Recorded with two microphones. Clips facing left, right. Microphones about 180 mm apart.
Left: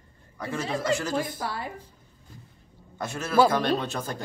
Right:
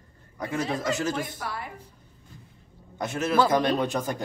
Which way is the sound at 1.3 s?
30° left (ahead or behind).